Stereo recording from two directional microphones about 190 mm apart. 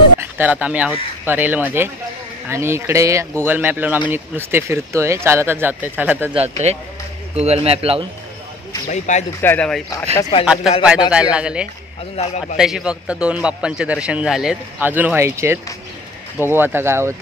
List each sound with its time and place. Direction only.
0.2 s speech: 10° right (ahead or behind)
6.7 s a man's voice: 35° right (ahead or behind)
8.9 s speech: 40° left (ahead or behind)
9.4 s a man's voice: 10° left (ahead or behind)
12.2 s speech: 35° left (ahead or behind)
12.5 s a man's voice: 5° right (ahead or behind)